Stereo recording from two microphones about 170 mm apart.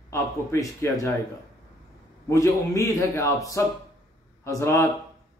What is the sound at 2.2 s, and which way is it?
A man's voice, 20° left (ahead or behind).